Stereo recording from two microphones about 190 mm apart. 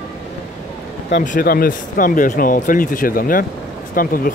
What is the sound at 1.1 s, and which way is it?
Speech, 45° left (ahead or behind).